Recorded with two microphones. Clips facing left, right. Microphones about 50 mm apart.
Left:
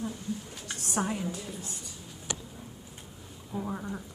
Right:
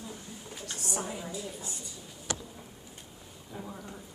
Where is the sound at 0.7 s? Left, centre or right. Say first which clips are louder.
Left 5 dB; left.